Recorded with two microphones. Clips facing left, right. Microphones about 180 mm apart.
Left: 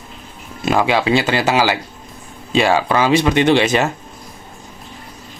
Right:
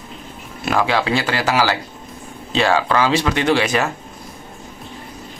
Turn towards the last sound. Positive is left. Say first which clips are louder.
# left 3 dB
turn(degrees=25)  # may be behind; listen again after turning